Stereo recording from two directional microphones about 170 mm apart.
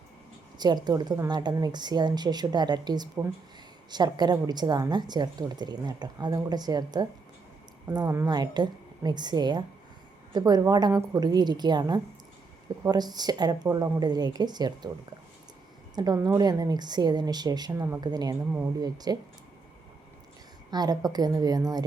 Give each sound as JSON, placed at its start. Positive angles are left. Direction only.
{"t": 0.9, "sound": "a woman's voice", "side_deg": -25}
{"t": 16.0, "sound": "a woman's voice", "side_deg": -25}
{"t": 20.7, "sound": "a woman's voice", "side_deg": -25}